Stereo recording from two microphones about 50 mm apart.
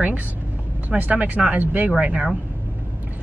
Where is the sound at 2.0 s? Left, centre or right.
Right.